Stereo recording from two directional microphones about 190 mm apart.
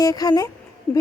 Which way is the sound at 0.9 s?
5° left (ahead or behind).